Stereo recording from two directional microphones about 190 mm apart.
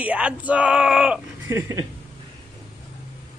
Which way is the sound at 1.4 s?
15° right (ahead or behind).